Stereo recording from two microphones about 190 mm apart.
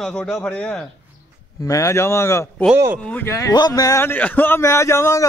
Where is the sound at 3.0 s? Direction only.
10° left (ahead or behind).